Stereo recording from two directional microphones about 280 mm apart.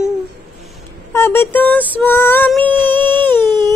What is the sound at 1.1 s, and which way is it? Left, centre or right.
Female singing, centre.